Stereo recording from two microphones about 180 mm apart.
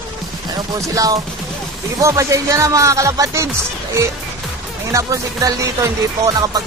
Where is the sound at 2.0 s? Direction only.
15° right (ahead or behind).